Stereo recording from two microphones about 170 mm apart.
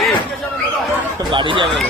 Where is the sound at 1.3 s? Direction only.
30° right (ahead or behind).